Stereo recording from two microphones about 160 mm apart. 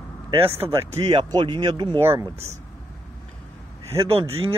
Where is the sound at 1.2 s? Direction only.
25° right (ahead or behind).